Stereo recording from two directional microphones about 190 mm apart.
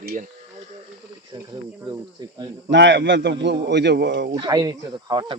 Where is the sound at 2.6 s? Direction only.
70° right (ahead or behind).